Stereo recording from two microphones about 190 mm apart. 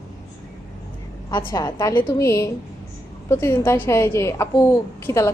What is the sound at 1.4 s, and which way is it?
A woman's voice, 15° left (ahead or behind).